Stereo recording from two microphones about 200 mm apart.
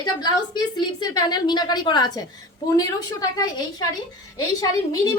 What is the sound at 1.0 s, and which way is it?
A woman's voice, 20° left (ahead or behind).